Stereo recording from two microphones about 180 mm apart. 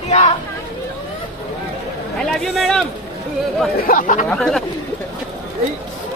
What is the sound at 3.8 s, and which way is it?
Speech, 50° left (ahead or behind).